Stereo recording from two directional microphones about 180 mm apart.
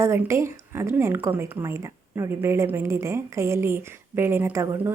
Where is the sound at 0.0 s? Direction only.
15° right (ahead or behind).